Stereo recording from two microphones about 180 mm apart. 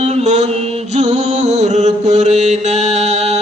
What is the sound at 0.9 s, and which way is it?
Mantra, 40° right (ahead or behind).